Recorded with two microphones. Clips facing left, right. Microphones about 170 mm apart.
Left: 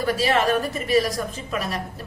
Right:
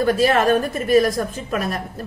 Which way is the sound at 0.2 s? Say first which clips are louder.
Right 4 dB; 50° right (ahead or behind).